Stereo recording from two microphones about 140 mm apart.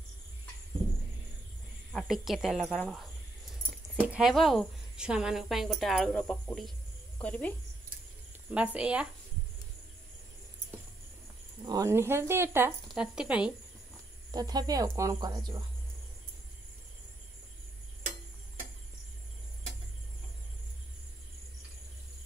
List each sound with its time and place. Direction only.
1.9 s a woman's voice: centre (ahead or behind)
3.9 s a woman's voice: 10° right (ahead or behind); by 7.5 s 10° left (ahead or behind)
8.5 s speech: 10° right (ahead or behind)
11.6 s speech: 25° right (ahead or behind)
12.9 s a woman's voice: 5° right (ahead or behind)
14.3 s speech: 30° right (ahead or behind)